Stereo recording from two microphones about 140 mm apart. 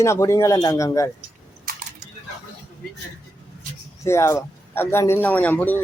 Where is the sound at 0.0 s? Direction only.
20° left (ahead or behind).